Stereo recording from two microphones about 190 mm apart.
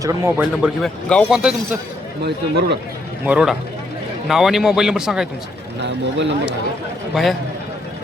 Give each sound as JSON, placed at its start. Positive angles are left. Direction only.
{"t": 0.0, "sound": "speech", "side_deg": -15}
{"t": 0.6, "sound": "a man's voice", "side_deg": 0}
{"t": 2.2, "sound": "speech", "side_deg": -60}
{"t": 3.2, "sound": "a man's voice", "side_deg": -5}
{"t": 5.8, "sound": "speech", "side_deg": -65}
{"t": 7.1, "sound": "a man's voice", "side_deg": 0}